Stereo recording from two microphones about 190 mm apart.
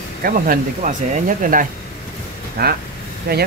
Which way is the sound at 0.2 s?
50° right (ahead or behind).